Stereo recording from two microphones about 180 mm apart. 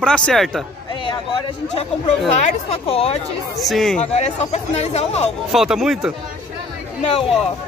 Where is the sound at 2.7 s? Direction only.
30° left (ahead or behind).